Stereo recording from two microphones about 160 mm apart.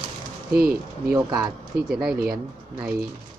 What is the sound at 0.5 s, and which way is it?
Speech, 65° right (ahead or behind).